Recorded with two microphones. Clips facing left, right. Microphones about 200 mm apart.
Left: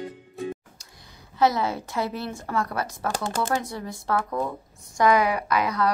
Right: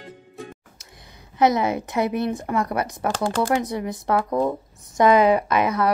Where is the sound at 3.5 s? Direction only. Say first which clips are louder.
Right 5 dB; 15° right (ahead or behind).